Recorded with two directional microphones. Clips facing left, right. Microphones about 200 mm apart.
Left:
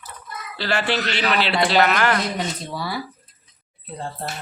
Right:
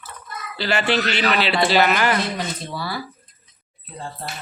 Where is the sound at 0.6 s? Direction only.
Centre (ahead or behind).